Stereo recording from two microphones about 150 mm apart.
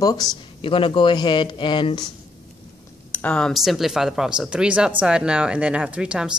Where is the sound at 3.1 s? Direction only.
10° left (ahead or behind).